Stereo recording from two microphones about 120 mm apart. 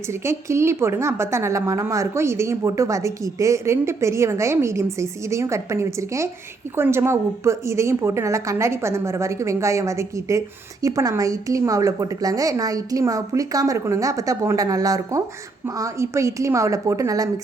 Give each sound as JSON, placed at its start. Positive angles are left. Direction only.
{"t": 0.1, "sound": "a woman's voice", "side_deg": -25}